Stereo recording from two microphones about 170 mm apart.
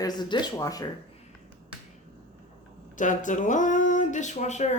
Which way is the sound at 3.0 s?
50° left (ahead or behind).